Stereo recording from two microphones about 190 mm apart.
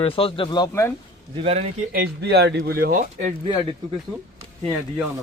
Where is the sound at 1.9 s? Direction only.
55° right (ahead or behind).